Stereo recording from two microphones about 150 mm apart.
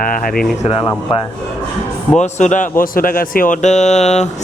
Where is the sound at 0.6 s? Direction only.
35° left (ahead or behind).